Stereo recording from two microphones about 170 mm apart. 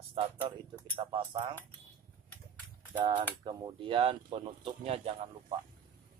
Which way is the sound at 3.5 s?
30° right (ahead or behind).